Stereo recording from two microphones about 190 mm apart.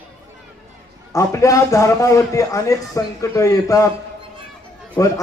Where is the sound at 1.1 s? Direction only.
15° left (ahead or behind).